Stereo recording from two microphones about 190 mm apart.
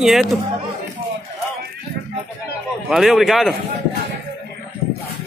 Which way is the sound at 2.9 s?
Centre (ahead or behind).